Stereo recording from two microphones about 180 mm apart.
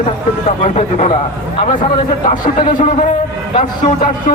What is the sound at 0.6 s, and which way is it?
Speech, 40° left (ahead or behind).